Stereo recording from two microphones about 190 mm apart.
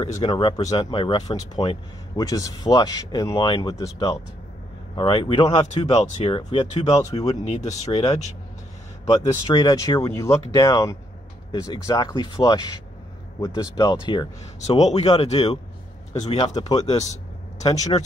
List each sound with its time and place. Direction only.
0.0 s speech: 25° left (ahead or behind)
9.0 s speech: 20° left (ahead or behind)
14.7 s speech: 35° left (ahead or behind)
16.9 s a sound: 35° left (ahead or behind)
17.9 s speech: 30° left (ahead or behind)